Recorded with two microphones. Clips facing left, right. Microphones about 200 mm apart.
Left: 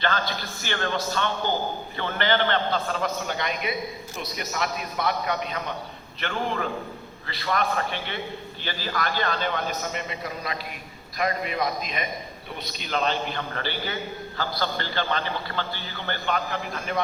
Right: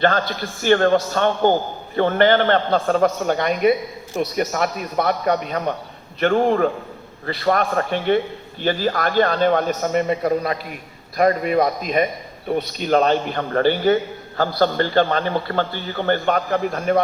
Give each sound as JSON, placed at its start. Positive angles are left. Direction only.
{"t": 0.0, "sound": "a man's voice", "side_deg": -50}